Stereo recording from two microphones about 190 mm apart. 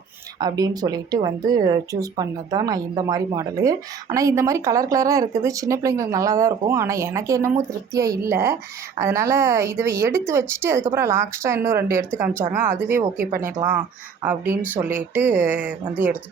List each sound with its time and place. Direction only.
0.3 s speech: 20° right (ahead or behind)